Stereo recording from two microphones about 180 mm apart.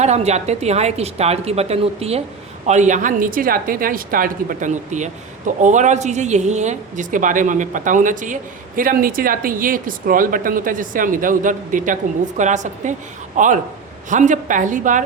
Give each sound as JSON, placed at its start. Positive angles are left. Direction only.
{"t": 0.0, "sound": "a woman's voice", "side_deg": -35}